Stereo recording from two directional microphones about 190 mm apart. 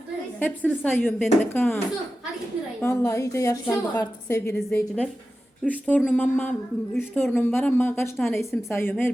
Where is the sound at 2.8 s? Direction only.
15° left (ahead or behind).